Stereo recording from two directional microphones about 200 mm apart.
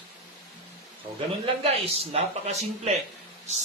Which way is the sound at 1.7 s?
30° right (ahead or behind).